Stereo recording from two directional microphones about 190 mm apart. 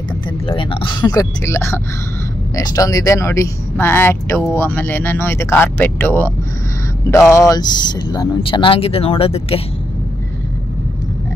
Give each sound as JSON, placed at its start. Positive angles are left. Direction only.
{"t": 0.5, "sound": "speech", "side_deg": 25}